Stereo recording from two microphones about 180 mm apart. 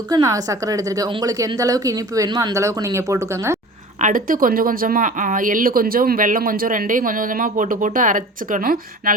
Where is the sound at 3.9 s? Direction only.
45° right (ahead or behind).